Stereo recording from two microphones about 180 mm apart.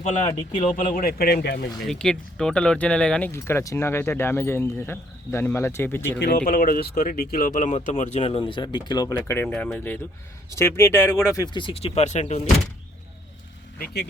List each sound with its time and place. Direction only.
0.0 s speech: 40° left (ahead or behind); by 1.9 s 60° left (ahead or behind)
1.9 s speech: 5° left (ahead or behind)
6.1 s speech: 65° left (ahead or behind); by 12.4 s 40° left (ahead or behind)
13.7 s speech: 60° left (ahead or behind)